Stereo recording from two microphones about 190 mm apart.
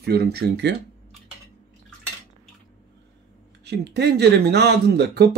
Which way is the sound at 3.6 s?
60° right (ahead or behind).